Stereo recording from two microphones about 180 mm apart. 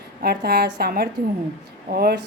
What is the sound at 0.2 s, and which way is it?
Speech, 60° right (ahead or behind).